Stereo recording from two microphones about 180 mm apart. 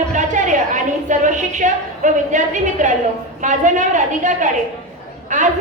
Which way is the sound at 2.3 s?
45° right (ahead or behind).